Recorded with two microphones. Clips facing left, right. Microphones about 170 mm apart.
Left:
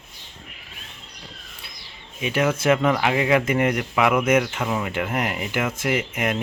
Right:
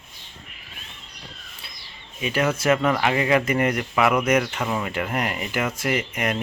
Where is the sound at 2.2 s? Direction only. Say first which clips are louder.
Left 1 dB; 10° left (ahead or behind).